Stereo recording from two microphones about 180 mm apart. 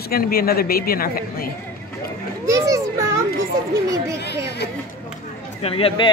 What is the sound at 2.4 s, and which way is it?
Children playing, 20° right (ahead or behind).